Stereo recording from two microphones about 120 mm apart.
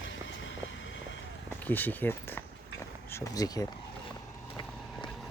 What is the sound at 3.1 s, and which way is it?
Speech, 25° left (ahead or behind).